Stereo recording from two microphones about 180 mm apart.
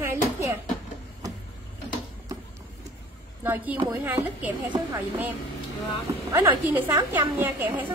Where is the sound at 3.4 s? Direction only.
10° right (ahead or behind).